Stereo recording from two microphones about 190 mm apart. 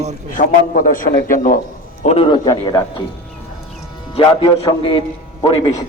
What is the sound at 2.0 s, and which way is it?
Speech, 30° left (ahead or behind).